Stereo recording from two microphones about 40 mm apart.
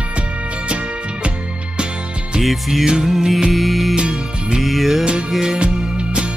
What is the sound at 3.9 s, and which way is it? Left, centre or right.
Music, right.